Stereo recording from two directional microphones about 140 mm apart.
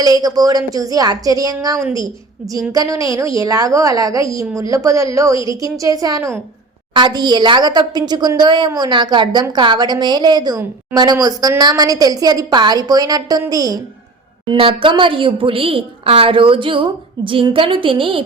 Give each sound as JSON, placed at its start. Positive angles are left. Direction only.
{"t": 0.0, "sound": "a woman's voice", "side_deg": -25}
{"t": 14.4, "sound": "a woman's voice", "side_deg": -40}